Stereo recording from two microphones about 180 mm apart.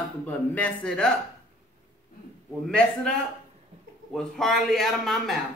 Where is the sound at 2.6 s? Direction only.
Centre (ahead or behind).